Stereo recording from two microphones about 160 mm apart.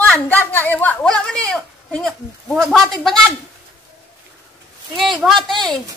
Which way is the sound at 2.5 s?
Centre (ahead or behind).